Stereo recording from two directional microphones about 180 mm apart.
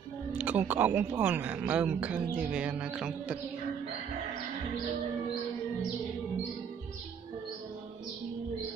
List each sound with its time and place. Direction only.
0.4 s speech: 10° right (ahead or behind)